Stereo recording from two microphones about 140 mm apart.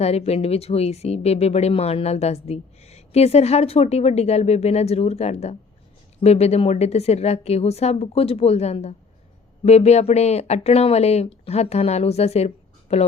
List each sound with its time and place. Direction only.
0.0 s speech: 50° left (ahead or behind)